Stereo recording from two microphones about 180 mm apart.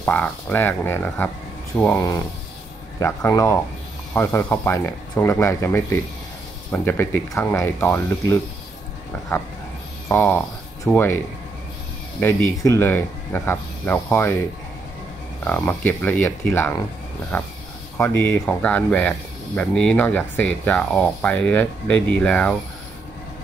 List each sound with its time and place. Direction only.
0.0 s speech: 10° left (ahead or behind)
2.0 s speech: 20° left (ahead or behind)
10.0 s speech: 10° left (ahead or behind)
12.2 s speech: 10° left (ahead or behind)
15.4 s speech: 10° left (ahead or behind)